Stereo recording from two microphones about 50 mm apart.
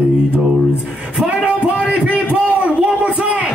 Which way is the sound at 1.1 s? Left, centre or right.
Right.